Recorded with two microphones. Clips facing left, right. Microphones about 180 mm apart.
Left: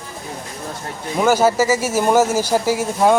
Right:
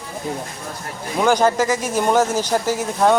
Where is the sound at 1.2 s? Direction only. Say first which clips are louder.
Left 1 dB; 5° left (ahead or behind).